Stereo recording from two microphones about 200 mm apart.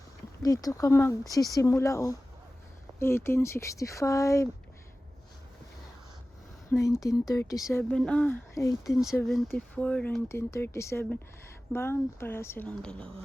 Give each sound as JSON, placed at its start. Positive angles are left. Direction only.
{"t": 0.4, "sound": "speech", "side_deg": 15}
{"t": 6.7, "sound": "speech", "side_deg": 15}
{"t": 8.8, "sound": "speech", "side_deg": 0}